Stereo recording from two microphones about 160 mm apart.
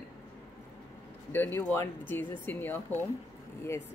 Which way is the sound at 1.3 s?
15° left (ahead or behind).